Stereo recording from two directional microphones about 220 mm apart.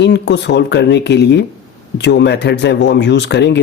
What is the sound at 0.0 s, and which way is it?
Speech, 50° left (ahead or behind).